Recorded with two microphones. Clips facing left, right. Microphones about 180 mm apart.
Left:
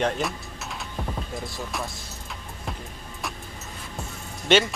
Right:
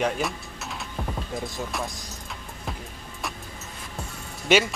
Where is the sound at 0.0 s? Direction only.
Centre (ahead or behind).